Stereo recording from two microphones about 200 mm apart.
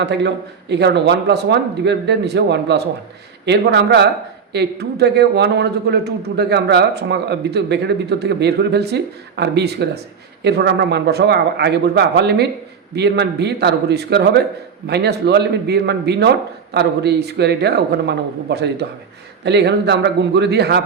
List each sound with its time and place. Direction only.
0.0 s a man's voice: 60° right (ahead or behind)